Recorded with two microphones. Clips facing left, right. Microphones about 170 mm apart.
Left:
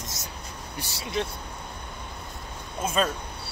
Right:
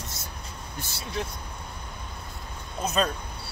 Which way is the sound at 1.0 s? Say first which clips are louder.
Left 3 dB; 15° left (ahead or behind).